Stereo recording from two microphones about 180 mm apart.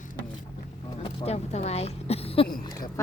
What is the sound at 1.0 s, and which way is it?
Speech, 35° left (ahead or behind).